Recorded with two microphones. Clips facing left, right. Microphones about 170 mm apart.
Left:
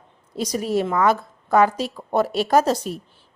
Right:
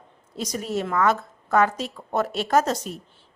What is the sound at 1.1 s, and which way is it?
A woman's voice, 35° left (ahead or behind).